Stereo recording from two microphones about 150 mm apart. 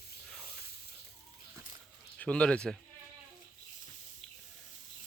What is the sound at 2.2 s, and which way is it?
Speech, 5° left (ahead or behind).